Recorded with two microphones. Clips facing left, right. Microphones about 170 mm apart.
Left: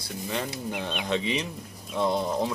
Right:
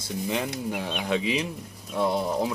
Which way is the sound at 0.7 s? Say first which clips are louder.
Right 1 dB; 5° right (ahead or behind).